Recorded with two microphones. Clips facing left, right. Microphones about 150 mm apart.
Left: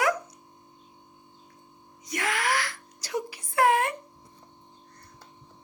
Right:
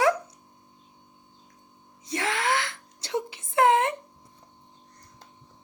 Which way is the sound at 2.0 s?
25° right (ahead or behind).